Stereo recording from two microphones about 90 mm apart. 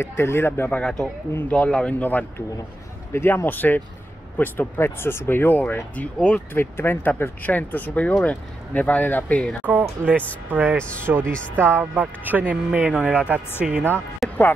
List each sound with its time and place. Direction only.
0.0 s speech: 30° left (ahead or behind)
0.7 s speech: 5° left (ahead or behind)
9.7 s speech: 20° right (ahead or behind)
14.2 s music: centre (ahead or behind)